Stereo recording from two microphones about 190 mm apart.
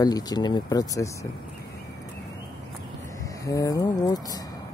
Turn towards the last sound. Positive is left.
turn(degrees=20)  # may be behind; listen again after turning